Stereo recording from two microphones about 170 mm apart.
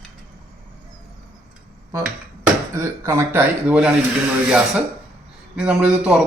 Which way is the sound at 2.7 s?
15° right (ahead or behind).